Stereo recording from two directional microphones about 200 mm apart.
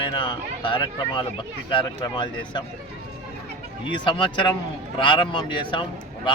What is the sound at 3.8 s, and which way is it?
Speech, 25° left (ahead or behind).